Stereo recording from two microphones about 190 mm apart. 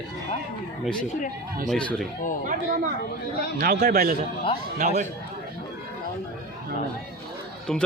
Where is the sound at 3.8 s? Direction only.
50° right (ahead or behind).